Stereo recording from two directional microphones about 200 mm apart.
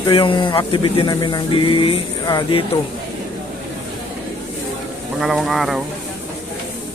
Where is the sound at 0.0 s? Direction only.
25° left (ahead or behind).